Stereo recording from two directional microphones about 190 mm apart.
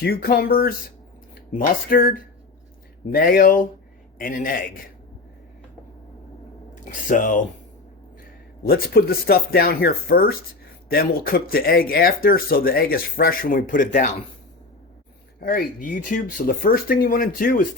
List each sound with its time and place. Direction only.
0.0 s speech: 55° left (ahead or behind)
6.7 s speech: 45° left (ahead or behind)
8.6 s speech: 50° left (ahead or behind)
15.4 s speech: 50° left (ahead or behind)